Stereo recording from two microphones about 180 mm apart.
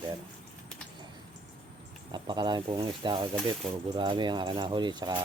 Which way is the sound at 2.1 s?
25° right (ahead or behind).